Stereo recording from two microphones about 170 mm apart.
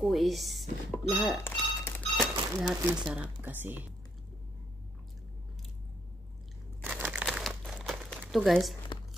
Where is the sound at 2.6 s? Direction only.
5° right (ahead or behind).